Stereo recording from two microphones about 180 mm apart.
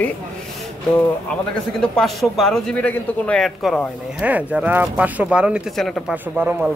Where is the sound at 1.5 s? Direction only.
5° left (ahead or behind).